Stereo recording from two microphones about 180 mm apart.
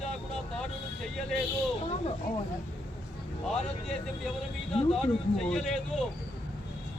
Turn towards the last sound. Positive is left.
turn(degrees=0)  # may be behind; listen again after turning